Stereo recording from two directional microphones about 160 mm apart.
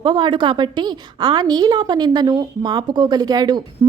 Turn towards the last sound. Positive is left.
turn(degrees=-25)  # may be behind; listen again after turning